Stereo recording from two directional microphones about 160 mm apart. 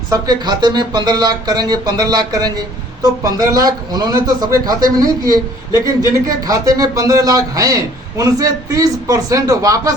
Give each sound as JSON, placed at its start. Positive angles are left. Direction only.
{"t": 0.1, "sound": "speech", "side_deg": -25}